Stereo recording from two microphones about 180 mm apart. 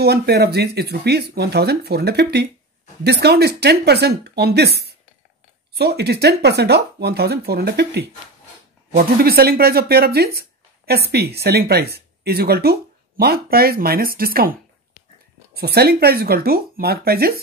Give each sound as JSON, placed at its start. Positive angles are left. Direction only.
{"t": 0.0, "sound": "speech", "side_deg": -65}